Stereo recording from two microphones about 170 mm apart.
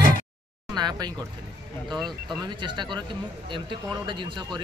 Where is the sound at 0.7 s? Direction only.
25° right (ahead or behind).